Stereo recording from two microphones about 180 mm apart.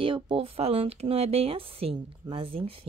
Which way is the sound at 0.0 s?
30° right (ahead or behind).